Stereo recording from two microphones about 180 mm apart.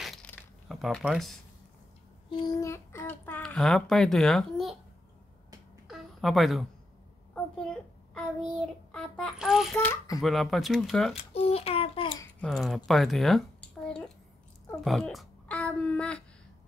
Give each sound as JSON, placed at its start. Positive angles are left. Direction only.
{"t": 0.0, "sound": "crumpling", "side_deg": 5}
{"t": 2.3, "sound": "a child's voice", "side_deg": 20}
{"t": 5.9, "sound": "a sound", "side_deg": 0}
{"t": 8.5, "sound": "a child's voice", "side_deg": 5}
{"t": 11.3, "sound": "a child's voice", "side_deg": 35}
{"t": 12.4, "sound": "a child's voice", "side_deg": 0}